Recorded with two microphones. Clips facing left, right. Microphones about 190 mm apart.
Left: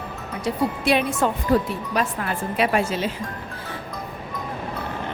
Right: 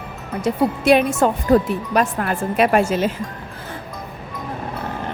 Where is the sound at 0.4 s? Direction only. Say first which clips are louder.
Right 6 dB; 45° right (ahead or behind).